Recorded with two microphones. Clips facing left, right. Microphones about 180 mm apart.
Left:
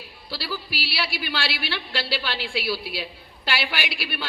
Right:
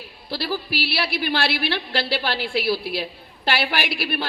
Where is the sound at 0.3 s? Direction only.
45° right (ahead or behind).